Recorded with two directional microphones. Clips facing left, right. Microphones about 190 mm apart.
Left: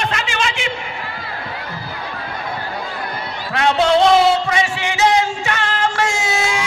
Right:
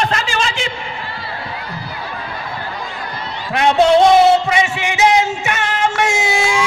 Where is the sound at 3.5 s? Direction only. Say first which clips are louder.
Right 3 dB; 20° right (ahead or behind).